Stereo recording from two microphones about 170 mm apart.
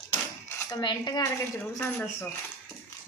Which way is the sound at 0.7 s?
25° left (ahead or behind).